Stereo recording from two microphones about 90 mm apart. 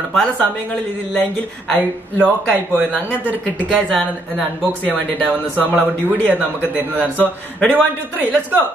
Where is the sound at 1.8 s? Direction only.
20° right (ahead or behind).